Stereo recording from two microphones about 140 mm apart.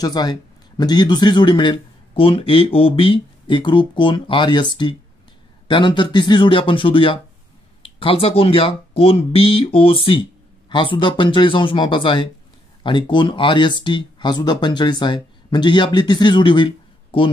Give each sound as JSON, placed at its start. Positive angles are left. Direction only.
{"t": 0.0, "sound": "speech", "side_deg": 30}